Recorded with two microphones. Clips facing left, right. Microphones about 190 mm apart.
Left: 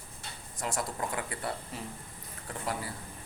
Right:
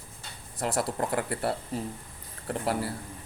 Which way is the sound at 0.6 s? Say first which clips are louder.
Right 6 dB; 45° right (ahead or behind).